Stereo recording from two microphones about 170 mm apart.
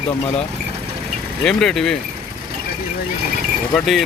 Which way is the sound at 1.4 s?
Centre (ahead or behind).